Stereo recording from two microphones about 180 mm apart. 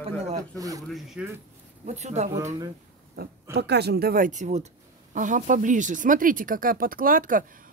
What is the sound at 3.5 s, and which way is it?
Speech, 65° right (ahead or behind).